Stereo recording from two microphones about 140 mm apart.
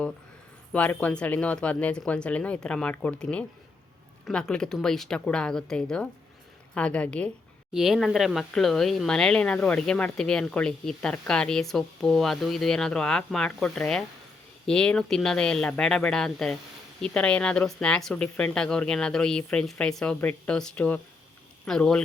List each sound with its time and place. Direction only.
0.7 s speech: 10° left (ahead or behind)
7.7 s speech: centre (ahead or behind)